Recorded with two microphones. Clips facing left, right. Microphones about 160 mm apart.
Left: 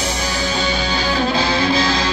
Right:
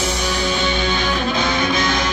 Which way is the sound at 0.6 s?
35° left (ahead or behind).